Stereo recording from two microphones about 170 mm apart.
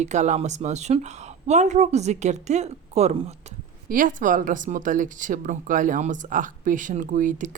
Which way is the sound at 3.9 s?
50° right (ahead or behind).